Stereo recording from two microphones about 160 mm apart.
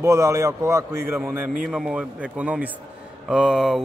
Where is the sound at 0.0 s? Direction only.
20° right (ahead or behind).